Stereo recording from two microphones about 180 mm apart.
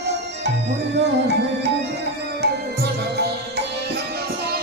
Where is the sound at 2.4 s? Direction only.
65° right (ahead or behind).